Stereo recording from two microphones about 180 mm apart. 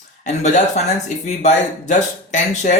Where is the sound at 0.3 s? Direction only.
40° left (ahead or behind).